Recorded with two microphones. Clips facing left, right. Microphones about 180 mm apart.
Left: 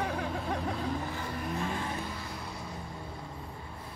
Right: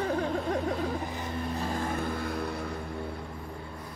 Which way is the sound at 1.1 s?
20° right (ahead or behind).